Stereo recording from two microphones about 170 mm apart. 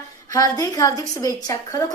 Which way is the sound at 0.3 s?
20° left (ahead or behind).